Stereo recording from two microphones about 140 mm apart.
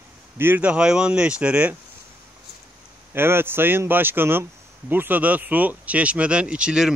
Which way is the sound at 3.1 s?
15° right (ahead or behind).